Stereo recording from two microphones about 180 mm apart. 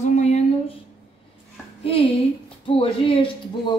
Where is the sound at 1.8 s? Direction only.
30° left (ahead or behind).